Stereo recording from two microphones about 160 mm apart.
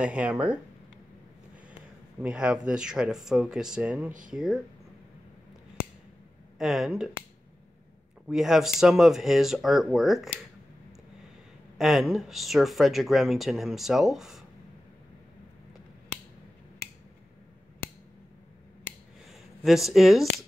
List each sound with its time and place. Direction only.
0.0 s speech: 10° right (ahead or behind)
2.2 s speech: 5° right (ahead or behind)
6.6 s speech: 5° right (ahead or behind)
8.3 s speech: 5° right (ahead or behind)
11.8 s speech: centre (ahead or behind)
19.6 s speech: centre (ahead or behind)